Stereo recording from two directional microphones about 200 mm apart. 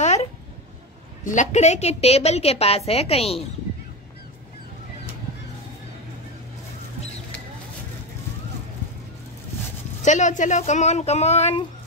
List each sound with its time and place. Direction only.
0.0 s a sound: 35° left (ahead or behind)
1.2 s a woman's voice: 40° left (ahead or behind)
10.0 s a woman's voice: 35° left (ahead or behind)